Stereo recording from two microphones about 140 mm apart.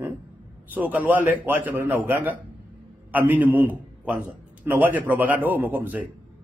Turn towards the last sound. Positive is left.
turn(degrees=-15)  # may be behind; listen again after turning